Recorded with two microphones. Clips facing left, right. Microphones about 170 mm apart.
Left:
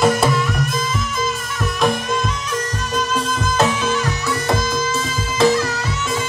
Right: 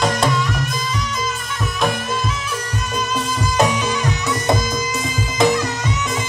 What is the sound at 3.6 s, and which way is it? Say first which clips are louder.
Music: even; 15° right (ahead or behind).